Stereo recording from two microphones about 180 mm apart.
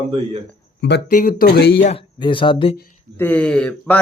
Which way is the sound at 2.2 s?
25° left (ahead or behind).